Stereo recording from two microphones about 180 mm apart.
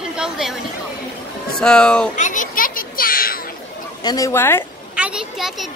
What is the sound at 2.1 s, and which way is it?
Children playing, 45° left (ahead or behind).